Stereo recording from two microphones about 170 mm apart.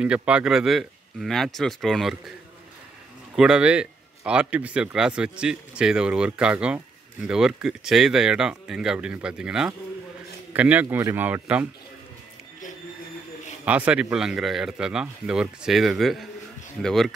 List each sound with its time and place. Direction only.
0.0 s speech: 5° right (ahead or behind)
3.3 s speech: 5° right (ahead or behind)
13.7 s speech: 10° right (ahead or behind)